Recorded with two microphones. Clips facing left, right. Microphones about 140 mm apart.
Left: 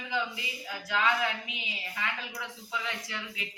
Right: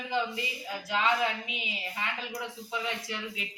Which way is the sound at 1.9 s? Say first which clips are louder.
Even; 25° right (ahead or behind).